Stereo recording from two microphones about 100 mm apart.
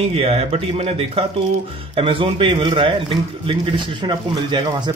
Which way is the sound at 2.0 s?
65° right (ahead or behind).